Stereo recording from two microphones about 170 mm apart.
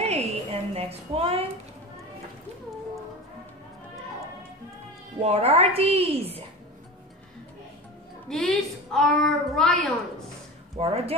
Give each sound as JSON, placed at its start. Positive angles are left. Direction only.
{"t": 0.0, "sound": "a sound", "side_deg": -40}
{"t": 5.2, "sound": "a woman's voice", "side_deg": -35}
{"t": 8.3, "sound": "a woman's voice", "side_deg": 0}
{"t": 10.8, "sound": "a woman's voice", "side_deg": -35}